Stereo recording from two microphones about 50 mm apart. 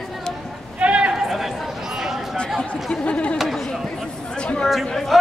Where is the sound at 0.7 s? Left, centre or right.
Right.